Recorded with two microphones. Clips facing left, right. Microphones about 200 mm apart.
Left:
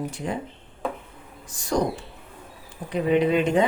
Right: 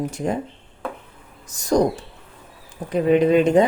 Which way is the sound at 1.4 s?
40° right (ahead or behind).